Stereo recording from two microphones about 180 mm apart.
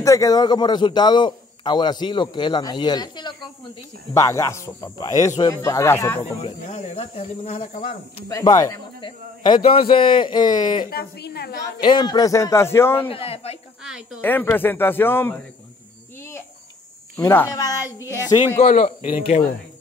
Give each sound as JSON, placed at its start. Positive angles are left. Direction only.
{"t": 0.0, "sound": "a man's voice", "side_deg": 20}
{"t": 6.7, "sound": "speech", "side_deg": 35}
{"t": 8.3, "sound": "a man's voice", "side_deg": 20}
{"t": 10.9, "sound": "a woman's voice", "side_deg": 60}
{"t": 11.8, "sound": "speech", "side_deg": 25}
{"t": 13.1, "sound": "speech", "side_deg": 35}
{"t": 14.2, "sound": "speech", "side_deg": 10}
{"t": 17.2, "sound": "speech", "side_deg": 15}
{"t": 18.7, "sound": "speech", "side_deg": 45}
{"t": 19.0, "sound": "speech", "side_deg": 35}